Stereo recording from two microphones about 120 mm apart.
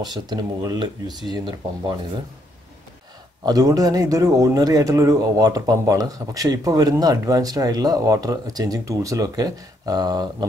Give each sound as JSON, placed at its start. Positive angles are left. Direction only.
{"t": 0.0, "sound": "speech", "side_deg": -35}
{"t": 3.4, "sound": "speech", "side_deg": -30}